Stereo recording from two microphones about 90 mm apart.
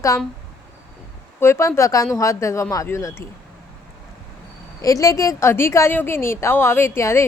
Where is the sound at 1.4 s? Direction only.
30° left (ahead or behind).